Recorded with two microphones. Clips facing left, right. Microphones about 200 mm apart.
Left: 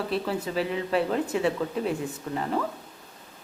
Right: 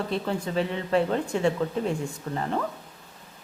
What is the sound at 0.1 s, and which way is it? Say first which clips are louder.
Speech: even; 5° left (ahead or behind).